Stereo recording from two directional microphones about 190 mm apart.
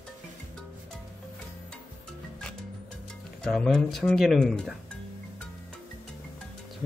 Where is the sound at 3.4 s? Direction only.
5° left (ahead or behind).